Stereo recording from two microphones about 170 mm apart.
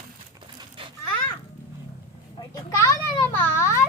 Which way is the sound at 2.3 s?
20° left (ahead or behind).